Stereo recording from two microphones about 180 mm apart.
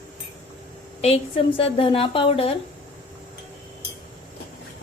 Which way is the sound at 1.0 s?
30° left (ahead or behind).